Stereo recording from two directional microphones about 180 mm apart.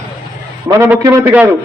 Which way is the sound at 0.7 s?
15° right (ahead or behind).